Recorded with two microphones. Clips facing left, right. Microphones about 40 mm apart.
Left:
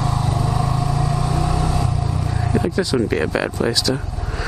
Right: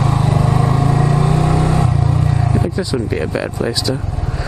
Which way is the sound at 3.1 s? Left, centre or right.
Centre.